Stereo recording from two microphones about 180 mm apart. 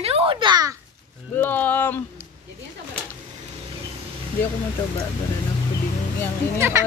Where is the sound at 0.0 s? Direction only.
30° right (ahead or behind).